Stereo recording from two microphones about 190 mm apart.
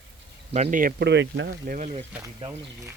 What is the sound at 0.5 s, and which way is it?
Speech, 40° right (ahead or behind).